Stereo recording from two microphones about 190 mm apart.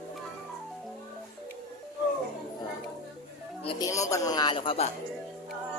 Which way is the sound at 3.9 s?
15° left (ahead or behind).